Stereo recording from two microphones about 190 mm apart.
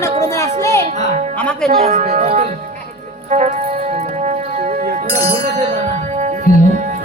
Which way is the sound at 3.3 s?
40° right (ahead or behind).